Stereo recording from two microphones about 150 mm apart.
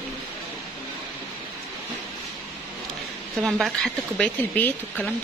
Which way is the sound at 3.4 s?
Centre (ahead or behind).